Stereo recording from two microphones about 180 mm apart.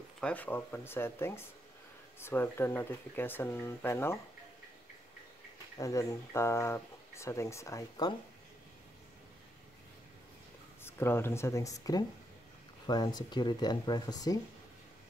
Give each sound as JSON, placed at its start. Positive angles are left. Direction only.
{"t": 0.2, "sound": "speech", "side_deg": 10}
{"t": 5.8, "sound": "speech", "side_deg": 20}
{"t": 10.8, "sound": "speech", "side_deg": 15}